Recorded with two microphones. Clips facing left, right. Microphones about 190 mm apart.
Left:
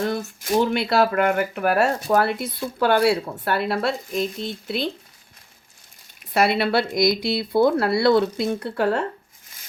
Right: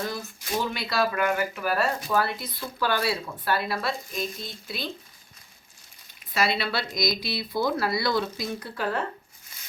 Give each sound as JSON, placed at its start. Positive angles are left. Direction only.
{"t": 0.0, "sound": "speech", "side_deg": 50}
{"t": 6.3, "sound": "speech", "side_deg": 60}